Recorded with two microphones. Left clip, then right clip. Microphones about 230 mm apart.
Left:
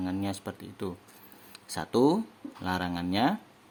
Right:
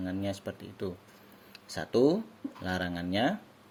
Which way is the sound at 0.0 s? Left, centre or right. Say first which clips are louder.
Left 1 dB; centre.